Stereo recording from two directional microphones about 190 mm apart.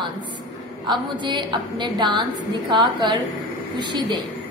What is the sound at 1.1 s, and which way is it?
A woman's voice, 25° right (ahead or behind).